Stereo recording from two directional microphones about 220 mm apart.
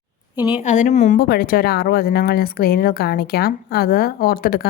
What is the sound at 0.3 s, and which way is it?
Speech, 10° right (ahead or behind).